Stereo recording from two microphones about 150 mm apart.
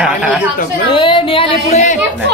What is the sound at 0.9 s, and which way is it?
Singing, 35° left (ahead or behind).